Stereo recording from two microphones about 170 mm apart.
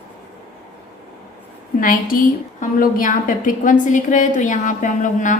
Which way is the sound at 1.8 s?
55° left (ahead or behind).